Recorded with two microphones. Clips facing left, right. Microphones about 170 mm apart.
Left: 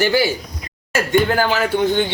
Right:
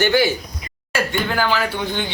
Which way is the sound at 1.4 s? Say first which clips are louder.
Left 4 dB; 45° left (ahead or behind).